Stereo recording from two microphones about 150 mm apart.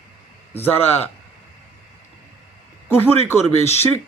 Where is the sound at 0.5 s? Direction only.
15° left (ahead or behind).